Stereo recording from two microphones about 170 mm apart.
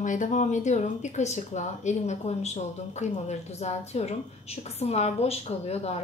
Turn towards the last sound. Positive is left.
turn(degrees=40)  # may be behind; listen again after turning